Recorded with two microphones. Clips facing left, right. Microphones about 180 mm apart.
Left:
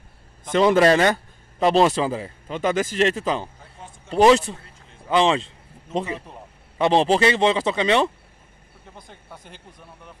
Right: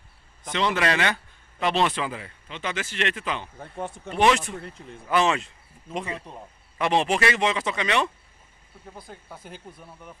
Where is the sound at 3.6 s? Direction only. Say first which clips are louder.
Right 10 dB; 55° right (ahead or behind).